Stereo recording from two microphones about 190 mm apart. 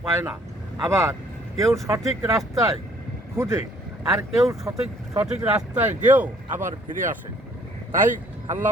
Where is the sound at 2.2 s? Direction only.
15° right (ahead or behind).